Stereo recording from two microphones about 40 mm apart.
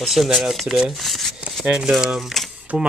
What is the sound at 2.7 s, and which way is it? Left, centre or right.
Speech, right.